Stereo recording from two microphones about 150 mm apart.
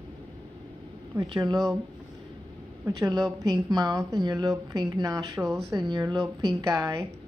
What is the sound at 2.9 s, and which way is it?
A woman's voice, 25° right (ahead or behind).